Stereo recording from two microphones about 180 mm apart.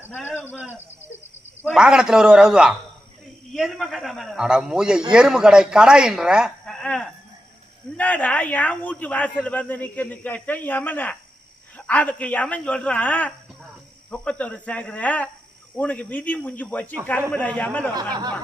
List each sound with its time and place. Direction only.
0.0 s cricket: 10° left (ahead or behind)
1.7 s a man's voice: 5° right (ahead or behind)
17.9 s speech: 20° right (ahead or behind)